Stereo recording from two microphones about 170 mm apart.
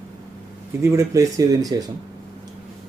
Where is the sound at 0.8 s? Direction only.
20° right (ahead or behind).